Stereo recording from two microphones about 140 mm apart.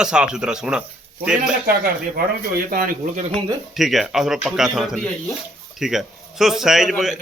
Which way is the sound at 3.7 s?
Centre (ahead or behind).